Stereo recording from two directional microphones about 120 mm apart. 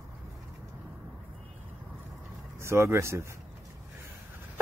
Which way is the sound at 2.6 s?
20° right (ahead or behind).